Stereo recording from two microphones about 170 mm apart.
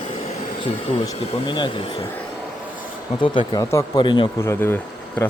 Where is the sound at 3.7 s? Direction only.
25° left (ahead or behind).